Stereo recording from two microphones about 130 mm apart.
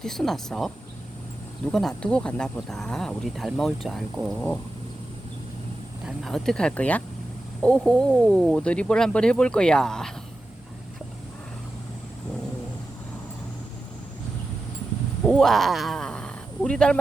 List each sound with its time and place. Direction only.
0.0 s speech: 5° left (ahead or behind)
1.7 s speech: 5° left (ahead or behind)
4.4 s speech: 10° left (ahead or behind)
6.1 s speech: centre (ahead or behind)
15.2 s speech: 5° left (ahead or behind)